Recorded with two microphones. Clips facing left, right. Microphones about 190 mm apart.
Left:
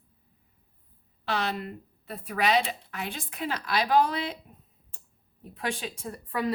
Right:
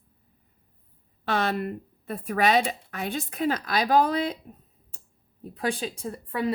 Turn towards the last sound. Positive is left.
turn(degrees=-30)  # may be behind; listen again after turning